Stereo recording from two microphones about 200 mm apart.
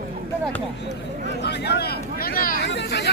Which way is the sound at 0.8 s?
60° left (ahead or behind).